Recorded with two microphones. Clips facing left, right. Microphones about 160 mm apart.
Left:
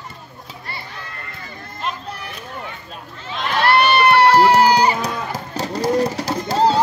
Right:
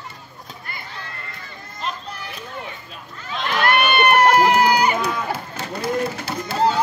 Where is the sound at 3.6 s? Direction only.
35° left (ahead or behind).